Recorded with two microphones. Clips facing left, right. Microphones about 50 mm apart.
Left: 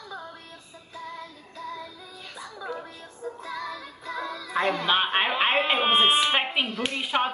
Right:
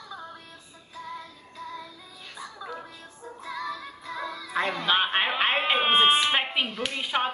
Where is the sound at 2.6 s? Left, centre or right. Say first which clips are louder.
Left 4 dB; centre.